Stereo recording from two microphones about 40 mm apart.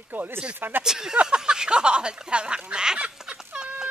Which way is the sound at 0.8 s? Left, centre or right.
Centre.